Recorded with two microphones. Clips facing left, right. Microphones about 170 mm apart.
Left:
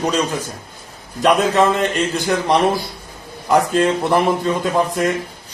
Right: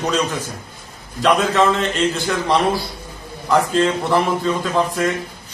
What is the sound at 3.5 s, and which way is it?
A man's voice, 20° left (ahead or behind).